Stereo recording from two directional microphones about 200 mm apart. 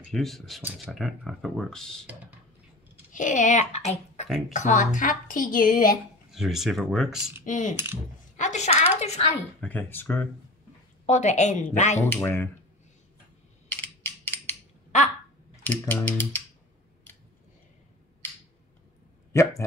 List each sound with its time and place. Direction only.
0.0 s speech: centre (ahead or behind)
3.1 s a child's voice: 40° left (ahead or behind)
6.3 s speech: centre (ahead or behind)
7.4 s speech: 40° left (ahead or behind)
7.7 s coin: 10° right (ahead or behind)
8.4 s a sound: 35° left (ahead or behind)
9.6 s speech: 10° left (ahead or behind)
11.1 s speech: 35° left (ahead or behind)
12.0 s speech: 10° left (ahead or behind)
13.7 s mechanisms: 10° left (ahead or behind)
15.5 s speech: 10° left (ahead or behind)